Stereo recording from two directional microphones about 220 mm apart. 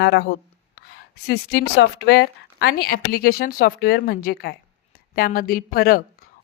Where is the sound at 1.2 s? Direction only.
45° left (ahead or behind).